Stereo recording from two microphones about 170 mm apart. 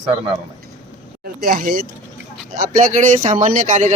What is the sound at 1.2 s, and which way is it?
Speech, 60° right (ahead or behind).